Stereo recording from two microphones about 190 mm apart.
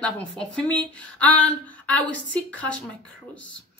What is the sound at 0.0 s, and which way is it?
Speech, 5° left (ahead or behind).